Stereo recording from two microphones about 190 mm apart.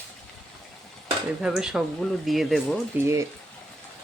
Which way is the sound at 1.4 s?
5° right (ahead or behind).